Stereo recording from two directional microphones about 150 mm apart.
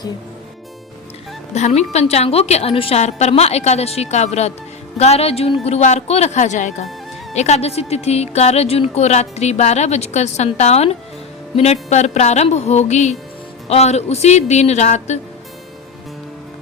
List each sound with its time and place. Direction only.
1.5 s a woman's voice: 45° left (ahead or behind)